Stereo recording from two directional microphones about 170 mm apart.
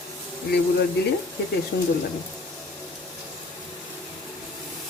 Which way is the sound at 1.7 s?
70° left (ahead or behind).